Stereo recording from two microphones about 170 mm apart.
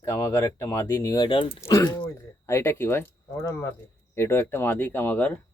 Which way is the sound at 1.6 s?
15° left (ahead or behind).